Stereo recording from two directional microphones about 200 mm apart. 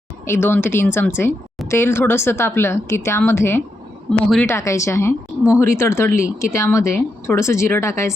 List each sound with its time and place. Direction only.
0.3 s speech: 10° left (ahead or behind)